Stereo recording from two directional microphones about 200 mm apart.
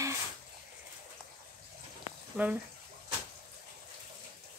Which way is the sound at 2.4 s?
10° right (ahead or behind).